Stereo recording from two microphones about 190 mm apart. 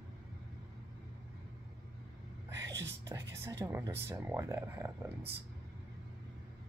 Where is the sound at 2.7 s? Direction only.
70° right (ahead or behind).